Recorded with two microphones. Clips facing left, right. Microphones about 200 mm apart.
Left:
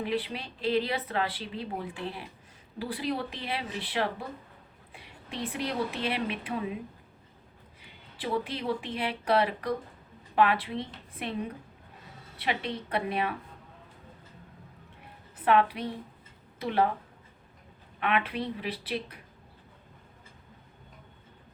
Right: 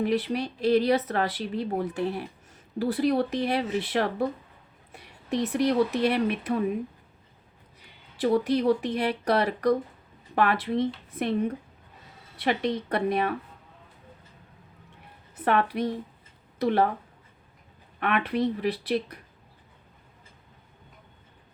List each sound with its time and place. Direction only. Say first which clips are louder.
0.0 s speech: right 6 dB; 45° right (ahead or behind)
7.8 s speech: right 12 dB; 40° right (ahead or behind)
15.4 s speech: even; 45° right (ahead or behind)
18.0 s speech: right 4 dB; 45° right (ahead or behind)